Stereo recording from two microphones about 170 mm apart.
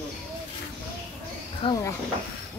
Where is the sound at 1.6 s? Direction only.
30° left (ahead or behind).